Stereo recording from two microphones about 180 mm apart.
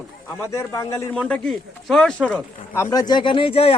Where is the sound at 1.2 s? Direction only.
5° left (ahead or behind); by 3.7 s 30° left (ahead or behind).